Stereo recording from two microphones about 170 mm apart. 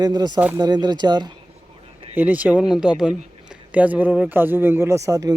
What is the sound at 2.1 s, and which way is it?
A man's voice, 10° right (ahead or behind).